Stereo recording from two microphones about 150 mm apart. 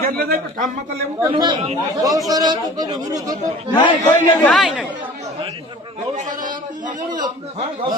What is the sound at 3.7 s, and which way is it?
Speech, 30° left (ahead or behind).